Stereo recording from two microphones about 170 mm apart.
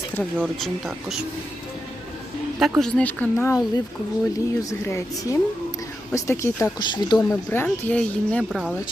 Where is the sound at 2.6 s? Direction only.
5° left (ahead or behind).